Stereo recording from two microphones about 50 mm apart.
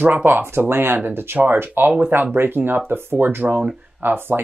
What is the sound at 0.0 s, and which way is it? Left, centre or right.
Speech, right.